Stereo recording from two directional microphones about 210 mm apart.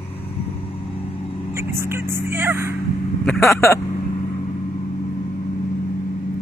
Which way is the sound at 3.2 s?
Centre (ahead or behind).